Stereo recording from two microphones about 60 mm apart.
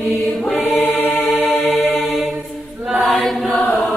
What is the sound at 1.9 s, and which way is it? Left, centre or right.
Mantra, centre.